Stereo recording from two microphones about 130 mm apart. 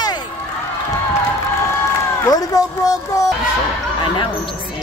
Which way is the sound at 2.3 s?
30° left (ahead or behind).